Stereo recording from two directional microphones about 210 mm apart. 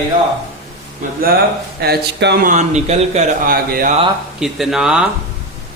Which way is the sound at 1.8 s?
50° right (ahead or behind).